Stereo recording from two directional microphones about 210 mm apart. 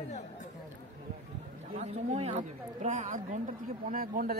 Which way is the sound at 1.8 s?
35° right (ahead or behind).